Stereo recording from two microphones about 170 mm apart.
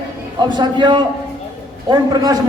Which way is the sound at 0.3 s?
25° right (ahead or behind).